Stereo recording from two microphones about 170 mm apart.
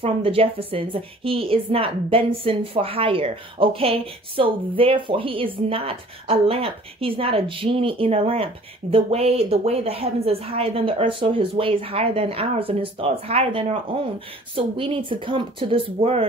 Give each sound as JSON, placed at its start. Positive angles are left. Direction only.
{"t": 0.0, "sound": "a woman's voice", "side_deg": -35}